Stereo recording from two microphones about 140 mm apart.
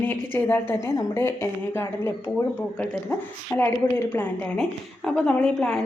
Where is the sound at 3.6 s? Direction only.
15° left (ahead or behind).